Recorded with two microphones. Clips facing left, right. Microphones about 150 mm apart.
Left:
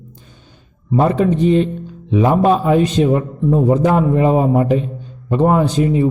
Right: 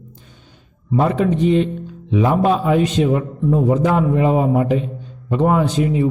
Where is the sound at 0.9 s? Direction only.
35° left (ahead or behind).